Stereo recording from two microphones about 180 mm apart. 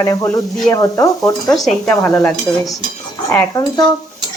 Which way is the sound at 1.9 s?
15° left (ahead or behind).